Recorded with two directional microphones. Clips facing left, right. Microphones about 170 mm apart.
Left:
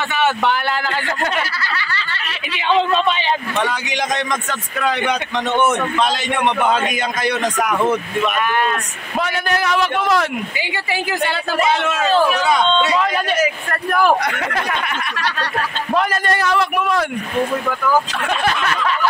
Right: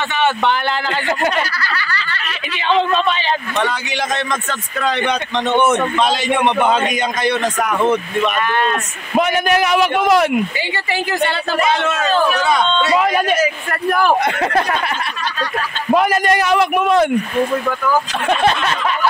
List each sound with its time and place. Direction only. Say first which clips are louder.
1.6 s snicker: right 1 dB; 25° left (ahead or behind)
2.5 s a man's voice: even; 15° left (ahead or behind)
9.1 s a man's voice: right 5 dB; 20° right (ahead or behind)
10.6 s a man's voice: right 2 dB; 10° left (ahead or behind)
12.9 s a man's voice: right 3 dB; 15° right (ahead or behind)
14.2 s speech: right 5 dB; 30° right (ahead or behind)
15.1 s speech: left 1 dB; 75° left (ahead or behind)
15.9 s a man's voice: right 5 dB; 15° right (ahead or behind)
18.3 s a sound: right 4 dB; 25° right (ahead or behind)